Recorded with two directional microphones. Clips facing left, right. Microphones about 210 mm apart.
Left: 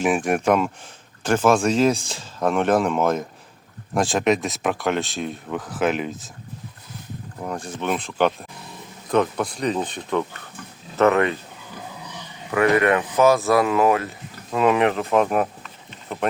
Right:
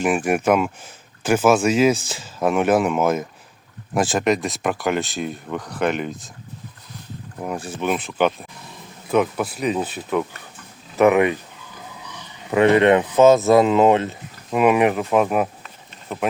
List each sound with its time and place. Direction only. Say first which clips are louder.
0.0 s speech: right 1 dB; centre (ahead or behind)
7.4 s speech: right 2 dB; 5° right (ahead or behind)
12.5 s speech: right 4 dB; 25° right (ahead or behind)
14.5 s speech: right 2 dB; 15° right (ahead or behind)